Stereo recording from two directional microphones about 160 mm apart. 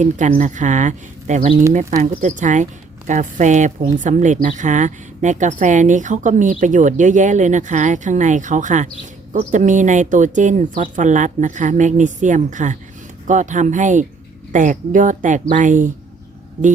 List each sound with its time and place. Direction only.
0.0 s a woman's voice: 50° right (ahead or behind)